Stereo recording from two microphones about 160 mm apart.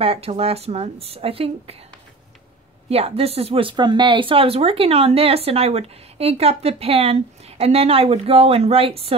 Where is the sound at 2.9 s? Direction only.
40° right (ahead or behind).